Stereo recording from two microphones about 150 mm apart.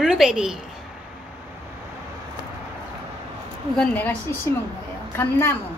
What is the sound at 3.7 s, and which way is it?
A woman's voice, 10° left (ahead or behind).